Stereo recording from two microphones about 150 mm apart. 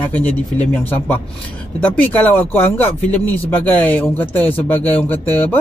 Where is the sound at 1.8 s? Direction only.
10° left (ahead or behind).